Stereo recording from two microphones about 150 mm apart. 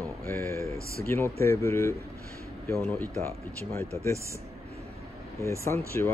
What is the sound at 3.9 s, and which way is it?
Speech, 20° right (ahead or behind).